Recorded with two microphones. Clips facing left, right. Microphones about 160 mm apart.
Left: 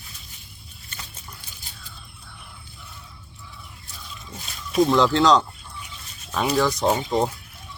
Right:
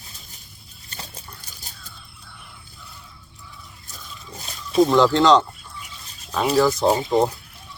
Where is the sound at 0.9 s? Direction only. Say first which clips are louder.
Right 3 dB; 35° right (ahead or behind).